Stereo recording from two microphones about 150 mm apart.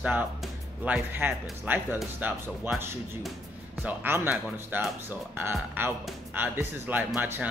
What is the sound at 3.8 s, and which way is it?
Speech, 15° right (ahead or behind).